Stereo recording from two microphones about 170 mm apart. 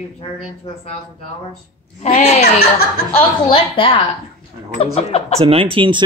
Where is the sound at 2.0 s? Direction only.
40° left (ahead or behind).